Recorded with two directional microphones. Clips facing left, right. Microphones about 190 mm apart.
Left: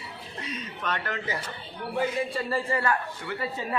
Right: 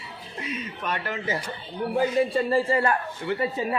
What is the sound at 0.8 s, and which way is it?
Speech, 10° right (ahead or behind).